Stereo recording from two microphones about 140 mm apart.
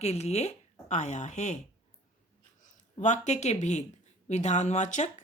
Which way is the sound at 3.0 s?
55° left (ahead or behind).